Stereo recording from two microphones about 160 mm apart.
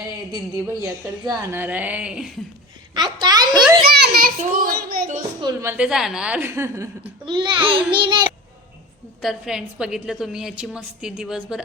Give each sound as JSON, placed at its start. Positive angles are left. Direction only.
{"t": 0.3, "sound": "a woman's voice", "side_deg": -20}
{"t": 2.9, "sound": "a sound", "side_deg": -30}
{"t": 4.0, "sound": "children playing", "side_deg": -70}
{"t": 4.4, "sound": "speech", "side_deg": -65}
{"t": 5.4, "sound": "child singing", "side_deg": -25}
{"t": 5.7, "sound": "a woman's voice", "side_deg": -5}
{"t": 7.0, "sound": "a child's voice", "side_deg": -30}
{"t": 7.9, "sound": "child singing", "side_deg": -30}
{"t": 9.2, "sound": "a woman's voice", "side_deg": 0}